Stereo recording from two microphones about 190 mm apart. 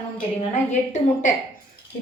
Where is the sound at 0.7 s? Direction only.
40° left (ahead or behind).